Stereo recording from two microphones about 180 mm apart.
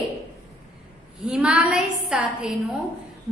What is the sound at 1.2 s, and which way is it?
A woman's voice, 5° right (ahead or behind).